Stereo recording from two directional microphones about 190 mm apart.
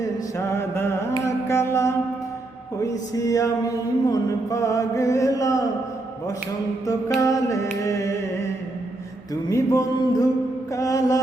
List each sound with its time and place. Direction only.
0.3 s music: 15° left (ahead or behind)
3.2 s mantra: 20° left (ahead or behind)
7.2 s mantra: 20° left (ahead or behind)
7.9 s music: 15° left (ahead or behind)
9.3 s mantra: 15° left (ahead or behind)